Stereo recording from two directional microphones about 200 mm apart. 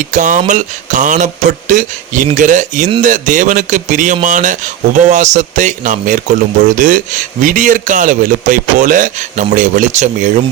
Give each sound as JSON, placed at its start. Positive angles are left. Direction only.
{"t": 0.0, "sound": "a man's voice", "side_deg": -40}